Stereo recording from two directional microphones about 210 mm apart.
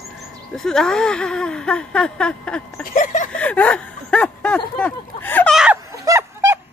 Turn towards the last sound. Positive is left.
turn(degrees=-15)  # may be behind; listen again after turning